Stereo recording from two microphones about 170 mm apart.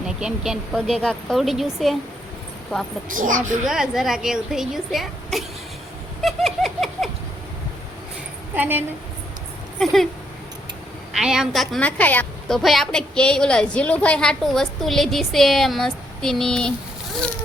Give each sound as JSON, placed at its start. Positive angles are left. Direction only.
{"t": 0.0, "sound": "a woman's voice", "side_deg": -5}
{"t": 3.1, "sound": "a woman's voice", "side_deg": -50}
{"t": 3.6, "sound": "a woman's voice", "side_deg": -5}
{"t": 6.2, "sound": "a sound", "side_deg": 0}
{"t": 8.5, "sound": "a woman's voice", "side_deg": -10}
{"t": 9.7, "sound": "a woman's voice", "side_deg": 0}
{"t": 11.2, "sound": "a woman's voice", "side_deg": -5}